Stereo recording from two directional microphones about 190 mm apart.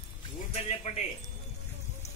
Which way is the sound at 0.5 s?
35° left (ahead or behind).